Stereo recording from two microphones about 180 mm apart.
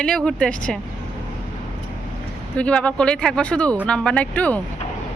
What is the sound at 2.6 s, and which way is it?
Speech, 5° left (ahead or behind).